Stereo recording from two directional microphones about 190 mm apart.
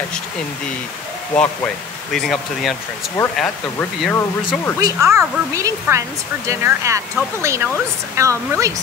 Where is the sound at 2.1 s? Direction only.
Centre (ahead or behind).